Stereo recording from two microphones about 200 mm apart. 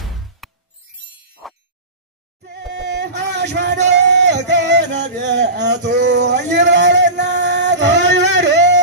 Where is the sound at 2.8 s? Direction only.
60° right (ahead or behind).